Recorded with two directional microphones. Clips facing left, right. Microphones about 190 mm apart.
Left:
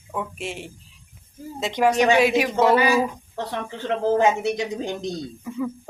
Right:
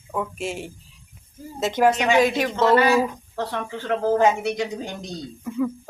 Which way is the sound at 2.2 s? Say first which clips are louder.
Left 2 dB; 10° left (ahead or behind).